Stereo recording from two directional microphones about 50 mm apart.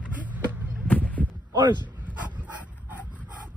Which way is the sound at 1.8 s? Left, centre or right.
Right.